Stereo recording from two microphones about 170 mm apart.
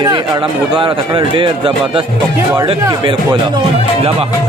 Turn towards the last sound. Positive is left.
turn(degrees=-25)  # may be behind; listen again after turning